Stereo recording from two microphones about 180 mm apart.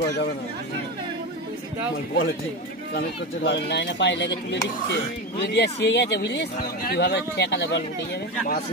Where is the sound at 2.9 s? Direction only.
70° left (ahead or behind).